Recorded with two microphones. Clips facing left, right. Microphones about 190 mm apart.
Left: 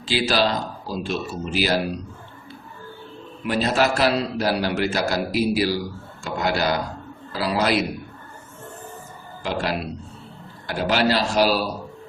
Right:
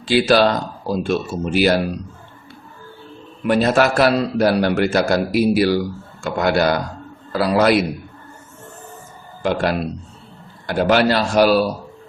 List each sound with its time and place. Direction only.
0.0 s a man's voice: 55° right (ahead or behind)
3.4 s a man's voice: 55° right (ahead or behind)
9.4 s a man's voice: 55° right (ahead or behind)